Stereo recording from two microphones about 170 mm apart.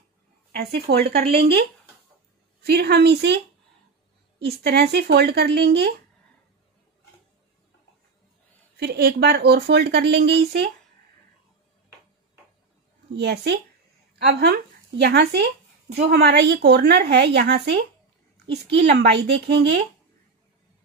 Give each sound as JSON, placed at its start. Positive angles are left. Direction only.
{"t": 0.7, "sound": "a woman's voice", "side_deg": -70}
{"t": 4.4, "sound": "a woman's voice", "side_deg": -70}
{"t": 8.7, "sound": "a woman's voice", "side_deg": -70}
{"t": 13.1, "sound": "a woman's voice", "side_deg": -80}
{"t": 14.1, "sound": "a woman's voice", "side_deg": -65}